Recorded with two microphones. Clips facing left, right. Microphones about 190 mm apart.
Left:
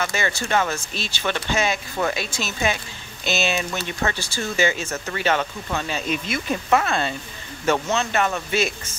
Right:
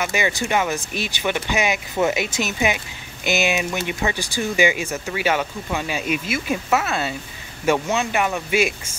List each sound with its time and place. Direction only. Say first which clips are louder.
0.0 s speech: right 2 dB; 15° right (ahead or behind)